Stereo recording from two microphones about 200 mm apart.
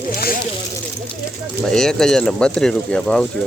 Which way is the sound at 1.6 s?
Centre (ahead or behind).